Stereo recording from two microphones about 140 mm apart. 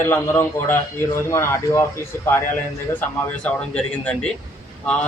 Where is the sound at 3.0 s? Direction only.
10° left (ahead or behind).